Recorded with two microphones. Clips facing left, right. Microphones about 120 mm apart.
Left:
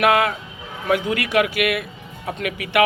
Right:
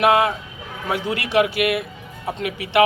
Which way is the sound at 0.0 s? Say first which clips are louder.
Right 1 dB; 25° right (ahead or behind).